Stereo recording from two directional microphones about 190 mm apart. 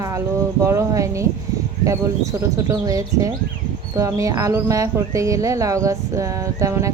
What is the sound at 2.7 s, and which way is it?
Speech, 15° right (ahead or behind).